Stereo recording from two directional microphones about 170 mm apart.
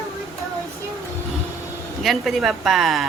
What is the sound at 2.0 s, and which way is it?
Speech, centre (ahead or behind).